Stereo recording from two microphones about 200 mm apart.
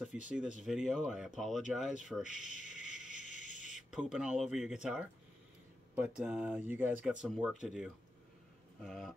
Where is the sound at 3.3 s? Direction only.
35° left (ahead or behind).